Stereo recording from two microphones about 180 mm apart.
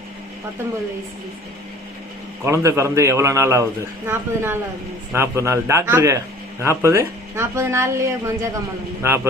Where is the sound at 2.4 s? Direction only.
15° right (ahead or behind).